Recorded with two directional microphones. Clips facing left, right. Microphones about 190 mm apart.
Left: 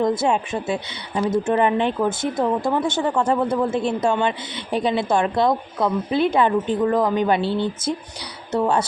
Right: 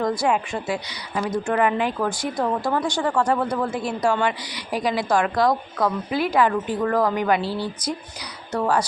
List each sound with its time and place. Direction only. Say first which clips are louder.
0.0 s a woman's voice: left 2 dB; 25° left (ahead or behind)